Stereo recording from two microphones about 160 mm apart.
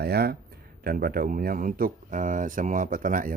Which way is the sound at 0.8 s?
65° right (ahead or behind).